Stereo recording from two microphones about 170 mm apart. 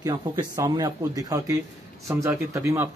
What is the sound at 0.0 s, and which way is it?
A man's voice, 25° right (ahead or behind).